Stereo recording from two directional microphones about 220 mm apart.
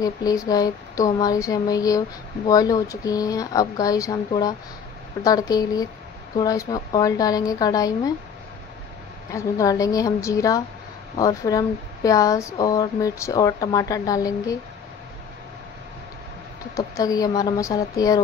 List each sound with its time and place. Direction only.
0.0 s speech: 15° left (ahead or behind)
9.3 s speech: 15° left (ahead or behind)
16.7 s speech: 15° left (ahead or behind)